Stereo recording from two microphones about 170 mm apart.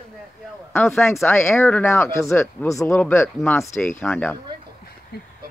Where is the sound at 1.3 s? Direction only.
15° left (ahead or behind).